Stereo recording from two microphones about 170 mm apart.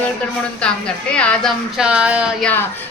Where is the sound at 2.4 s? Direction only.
10° left (ahead or behind).